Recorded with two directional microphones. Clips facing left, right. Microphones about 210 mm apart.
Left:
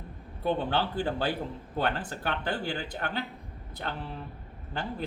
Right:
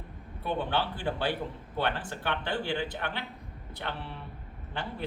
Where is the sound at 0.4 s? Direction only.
40° left (ahead or behind).